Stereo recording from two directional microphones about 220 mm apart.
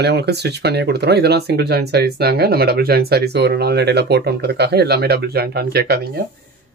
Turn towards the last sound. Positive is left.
turn(degrees=-45)  # may be behind; listen again after turning